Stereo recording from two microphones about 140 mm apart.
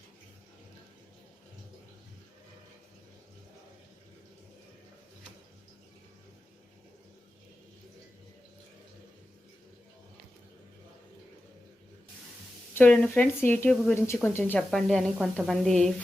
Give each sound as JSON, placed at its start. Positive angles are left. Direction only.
{"t": 12.7, "sound": "speech", "side_deg": 10}
{"t": 14.7, "sound": "speech", "side_deg": 5}